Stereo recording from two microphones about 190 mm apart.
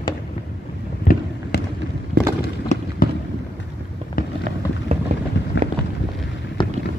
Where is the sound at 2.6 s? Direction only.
40° left (ahead or behind).